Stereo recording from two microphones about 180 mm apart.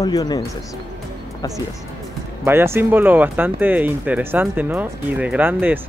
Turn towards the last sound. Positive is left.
turn(degrees=-10)  # may be behind; listen again after turning